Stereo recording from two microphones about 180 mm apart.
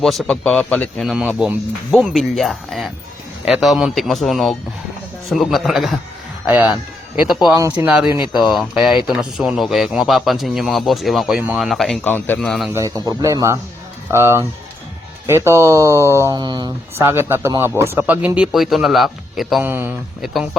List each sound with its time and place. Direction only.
0.0 s a man's voice: centre (ahead or behind); by 7.9 s 15° right (ahead or behind)
7.9 s a man's voice: 5° right (ahead or behind)
12.7 s a man's voice: 20° right (ahead or behind)
16.9 s a man's voice: 15° right (ahead or behind)
19.6 s speech: 10° right (ahead or behind)
20.2 s a man's voice: centre (ahead or behind)